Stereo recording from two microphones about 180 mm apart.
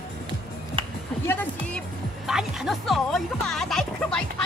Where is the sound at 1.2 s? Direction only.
10° left (ahead or behind).